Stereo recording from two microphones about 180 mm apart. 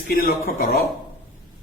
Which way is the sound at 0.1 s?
55° left (ahead or behind).